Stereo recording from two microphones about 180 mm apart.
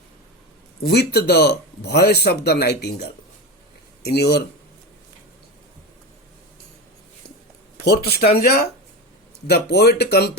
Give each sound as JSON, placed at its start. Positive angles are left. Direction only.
{"t": 0.8, "sound": "speech", "side_deg": 60}
{"t": 7.9, "sound": "speech", "side_deg": 60}